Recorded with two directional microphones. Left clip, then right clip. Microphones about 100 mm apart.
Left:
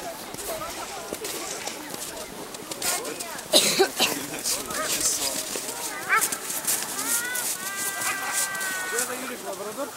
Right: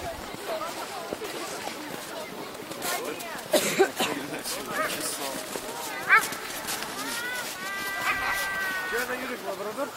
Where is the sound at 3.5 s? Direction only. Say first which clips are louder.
Left 3 dB; 25° left (ahead or behind).